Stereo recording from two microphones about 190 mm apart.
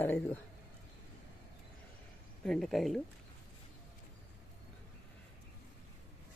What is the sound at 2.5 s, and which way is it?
Speech, centre (ahead or behind).